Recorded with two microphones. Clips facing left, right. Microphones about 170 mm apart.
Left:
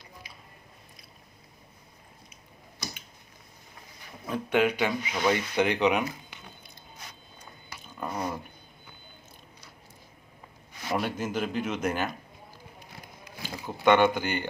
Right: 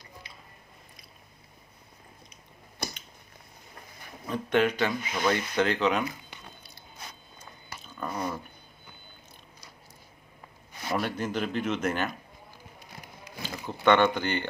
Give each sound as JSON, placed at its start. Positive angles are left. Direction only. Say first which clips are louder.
{"t": 0.2, "sound": "squish", "louder": "even", "side_deg": 10}
{"t": 2.8, "sound": "a sound", "louder": "right 3 dB", "side_deg": -55}
{"t": 4.3, "sound": "speech", "louder": "even", "side_deg": 10}
{"t": 7.9, "sound": "dog", "louder": "even", "side_deg": 10}
{"t": 10.9, "sound": "speech", "louder": "even", "side_deg": 10}
{"t": 13.7, "sound": "speech", "louder": "left 1 dB", "side_deg": 10}